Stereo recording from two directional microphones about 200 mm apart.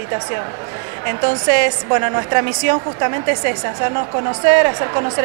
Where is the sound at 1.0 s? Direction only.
20° right (ahead or behind).